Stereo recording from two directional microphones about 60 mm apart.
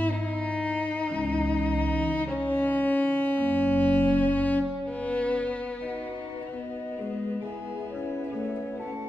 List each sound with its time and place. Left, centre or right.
0.6 s music: left